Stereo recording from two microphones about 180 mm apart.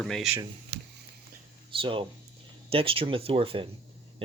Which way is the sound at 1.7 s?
30° right (ahead or behind).